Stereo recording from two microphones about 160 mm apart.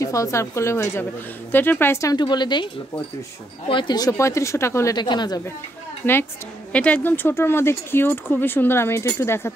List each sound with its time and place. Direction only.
0.0 s speech: 20° left (ahead or behind)
6.0 s speech: 10° left (ahead or behind)